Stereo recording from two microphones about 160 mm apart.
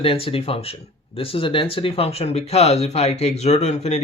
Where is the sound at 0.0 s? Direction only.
35° left (ahead or behind).